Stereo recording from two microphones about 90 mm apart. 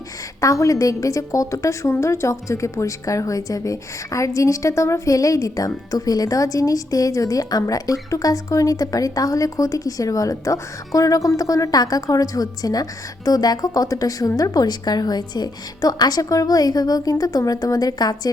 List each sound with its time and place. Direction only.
0.4 s a woman's voice: 40° left (ahead or behind)